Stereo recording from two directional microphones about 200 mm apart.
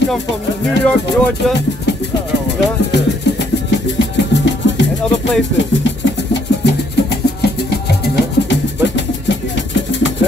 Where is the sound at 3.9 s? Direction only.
60° left (ahead or behind).